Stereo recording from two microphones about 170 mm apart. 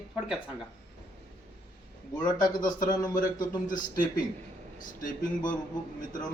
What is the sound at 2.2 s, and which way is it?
Speech, 25° left (ahead or behind).